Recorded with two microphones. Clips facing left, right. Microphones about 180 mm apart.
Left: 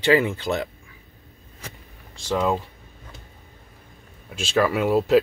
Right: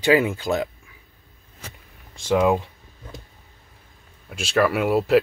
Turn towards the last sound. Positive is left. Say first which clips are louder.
# even
turn(degrees=-5)  # may be behind; listen again after turning